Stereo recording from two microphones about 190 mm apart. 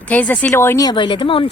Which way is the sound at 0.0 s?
10° left (ahead or behind).